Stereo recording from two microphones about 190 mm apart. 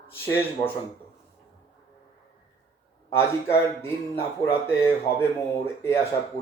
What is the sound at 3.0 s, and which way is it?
Speech, 15° left (ahead or behind).